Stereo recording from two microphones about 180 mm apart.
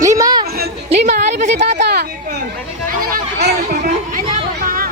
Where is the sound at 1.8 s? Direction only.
65° right (ahead or behind).